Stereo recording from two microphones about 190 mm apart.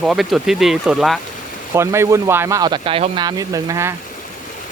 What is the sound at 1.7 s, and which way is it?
Speech, 15° right (ahead or behind).